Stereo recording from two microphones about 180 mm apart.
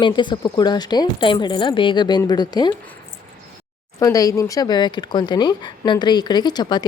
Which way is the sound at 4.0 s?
20° left (ahead or behind).